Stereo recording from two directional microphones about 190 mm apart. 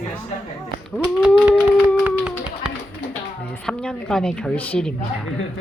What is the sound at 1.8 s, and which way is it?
Dog, 5° right (ahead or behind).